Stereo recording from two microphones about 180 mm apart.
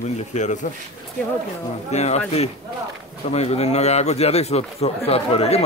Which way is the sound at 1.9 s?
40° left (ahead or behind).